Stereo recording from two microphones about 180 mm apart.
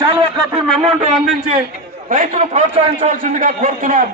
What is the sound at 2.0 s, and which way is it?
A man's voice, 45° right (ahead or behind).